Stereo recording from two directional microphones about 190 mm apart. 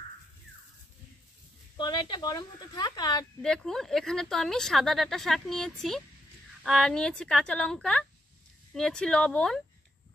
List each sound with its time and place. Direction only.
1.8 s a woman's voice: 25° left (ahead or behind)
3.4 s speech: 5° left (ahead or behind)